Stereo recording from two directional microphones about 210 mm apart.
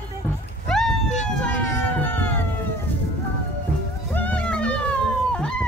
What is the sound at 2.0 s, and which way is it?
Cat, 10° left (ahead or behind).